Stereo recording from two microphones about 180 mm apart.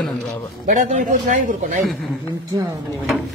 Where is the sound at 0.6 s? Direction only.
45° right (ahead or behind).